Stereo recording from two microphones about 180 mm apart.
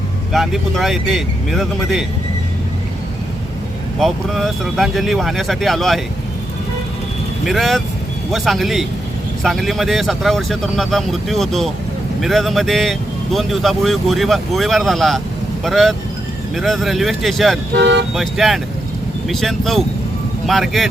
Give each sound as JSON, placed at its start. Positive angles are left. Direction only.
{"t": 0.3, "sound": "speech", "side_deg": 0}
{"t": 4.0, "sound": "speech", "side_deg": 0}
{"t": 7.4, "sound": "speech", "side_deg": 0}
{"t": 17.7, "sound": "speech", "side_deg": -75}
{"t": 18.1, "sound": "speech", "side_deg": 0}